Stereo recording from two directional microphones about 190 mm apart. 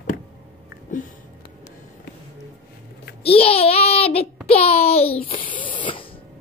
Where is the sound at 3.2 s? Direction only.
30° left (ahead or behind).